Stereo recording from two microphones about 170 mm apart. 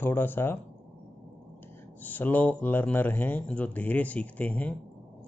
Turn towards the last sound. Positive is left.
turn(degrees=10)  # may be behind; listen again after turning